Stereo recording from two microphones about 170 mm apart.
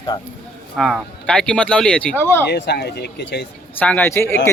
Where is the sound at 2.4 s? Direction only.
80° left.